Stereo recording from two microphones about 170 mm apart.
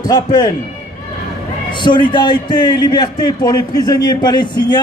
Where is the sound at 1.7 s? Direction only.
25° left (ahead or behind).